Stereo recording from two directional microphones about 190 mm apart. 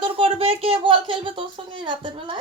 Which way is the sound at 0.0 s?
30° right (ahead or behind).